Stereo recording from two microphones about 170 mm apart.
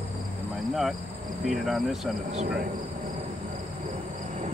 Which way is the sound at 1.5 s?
Centre (ahead or behind).